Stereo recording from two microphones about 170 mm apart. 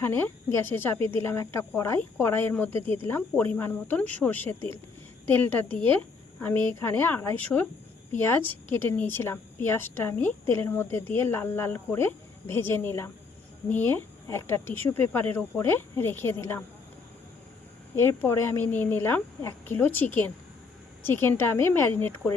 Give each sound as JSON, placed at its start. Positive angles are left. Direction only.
{"t": 0.0, "sound": "a woman's voice", "side_deg": 15}
{"t": 2.7, "sound": "speech", "side_deg": -35}
{"t": 3.1, "sound": "a woman's voice", "side_deg": 10}
{"t": 17.9, "sound": "a woman's voice", "side_deg": 15}